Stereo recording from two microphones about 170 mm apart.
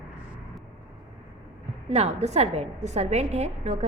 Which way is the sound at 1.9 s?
40° right (ahead or behind).